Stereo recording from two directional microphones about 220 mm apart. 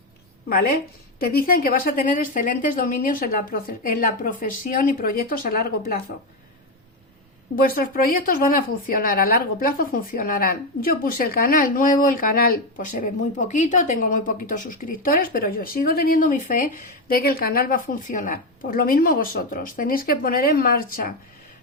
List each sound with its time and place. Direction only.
0.4 s a woman's voice: 45° left (ahead or behind)
7.5 s a woman's voice: 40° left (ahead or behind)